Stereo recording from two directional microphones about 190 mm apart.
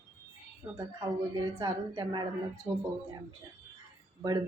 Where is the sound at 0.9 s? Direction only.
20° right (ahead or behind).